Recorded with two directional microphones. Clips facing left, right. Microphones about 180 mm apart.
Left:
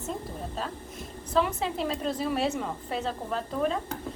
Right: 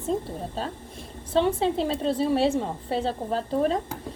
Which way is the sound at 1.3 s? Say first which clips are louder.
Right 5 dB; 30° right (ahead or behind).